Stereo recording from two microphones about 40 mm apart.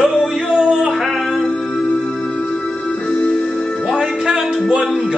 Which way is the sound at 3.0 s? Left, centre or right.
Left.